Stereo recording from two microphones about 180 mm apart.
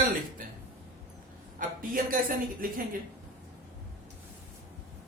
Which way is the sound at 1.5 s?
50° right (ahead or behind).